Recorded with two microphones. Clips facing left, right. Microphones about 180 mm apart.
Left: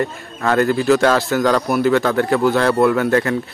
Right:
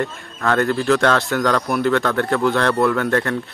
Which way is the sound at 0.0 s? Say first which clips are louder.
Left 2 dB; 5° left (ahead or behind).